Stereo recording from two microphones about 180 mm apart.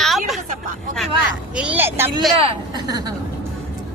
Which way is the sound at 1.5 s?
5° right (ahead or behind).